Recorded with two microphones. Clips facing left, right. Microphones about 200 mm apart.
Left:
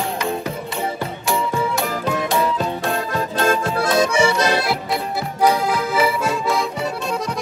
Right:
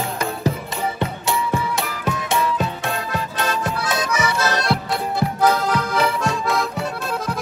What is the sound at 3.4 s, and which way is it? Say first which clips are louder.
Music: left 6 dB; 50° left (ahead or behind).